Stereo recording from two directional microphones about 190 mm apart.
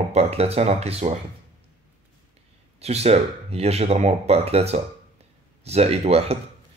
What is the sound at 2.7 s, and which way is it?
Speech, 35° right (ahead or behind).